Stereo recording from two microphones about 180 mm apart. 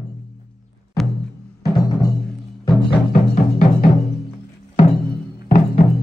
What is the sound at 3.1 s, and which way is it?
Music, 45° left (ahead or behind).